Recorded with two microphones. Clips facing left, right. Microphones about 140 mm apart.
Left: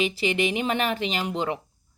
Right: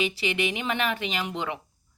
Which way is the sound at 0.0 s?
40° left (ahead or behind).